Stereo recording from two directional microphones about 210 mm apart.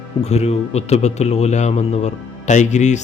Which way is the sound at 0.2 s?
30° left (ahead or behind).